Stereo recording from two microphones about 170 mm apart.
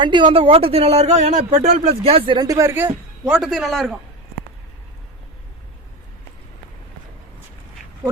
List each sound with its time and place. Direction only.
0.0 s a man's voice: 30° right (ahead or behind); by 3.9 s centre (ahead or behind)